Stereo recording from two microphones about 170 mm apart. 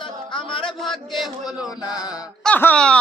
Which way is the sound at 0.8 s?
Centre (ahead or behind).